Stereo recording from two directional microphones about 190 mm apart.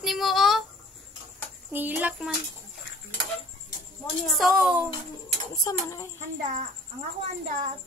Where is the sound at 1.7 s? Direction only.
10° right (ahead or behind).